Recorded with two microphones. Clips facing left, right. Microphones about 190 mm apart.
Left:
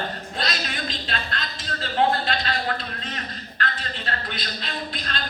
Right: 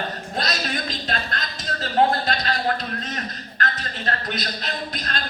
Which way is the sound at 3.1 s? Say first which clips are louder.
Right 3 dB; 45° right (ahead or behind).